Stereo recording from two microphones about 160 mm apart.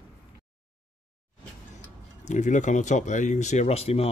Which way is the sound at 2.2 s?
50° left (ahead or behind).